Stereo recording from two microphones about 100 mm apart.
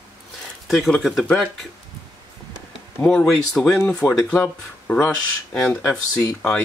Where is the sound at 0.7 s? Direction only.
5° left (ahead or behind).